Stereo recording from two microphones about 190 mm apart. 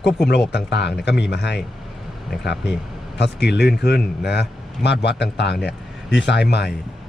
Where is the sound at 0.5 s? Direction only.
65° left (ahead or behind).